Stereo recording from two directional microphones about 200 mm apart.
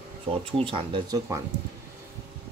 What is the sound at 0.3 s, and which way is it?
Speech, 30° right (ahead or behind).